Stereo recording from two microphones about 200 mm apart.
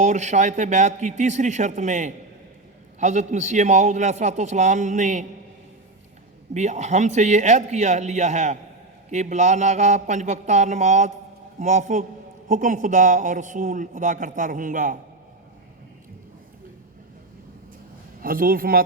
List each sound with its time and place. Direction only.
0.0 s a man's voice: 35° right (ahead or behind)
6.5 s a man's voice: 35° right (ahead or behind)
18.2 s a man's voice: 45° right (ahead or behind)